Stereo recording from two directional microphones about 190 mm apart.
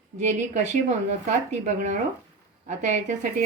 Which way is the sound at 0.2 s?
40° right (ahead or behind).